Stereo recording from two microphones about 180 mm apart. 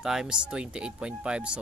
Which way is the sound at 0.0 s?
5° right (ahead or behind).